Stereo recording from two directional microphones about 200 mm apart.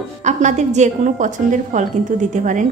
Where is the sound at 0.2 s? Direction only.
35° right (ahead or behind).